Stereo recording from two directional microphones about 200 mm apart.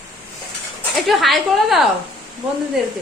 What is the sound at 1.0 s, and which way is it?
Speech, centre (ahead or behind).